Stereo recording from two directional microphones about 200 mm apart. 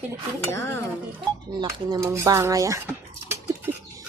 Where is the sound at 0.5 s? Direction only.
10° left (ahead or behind).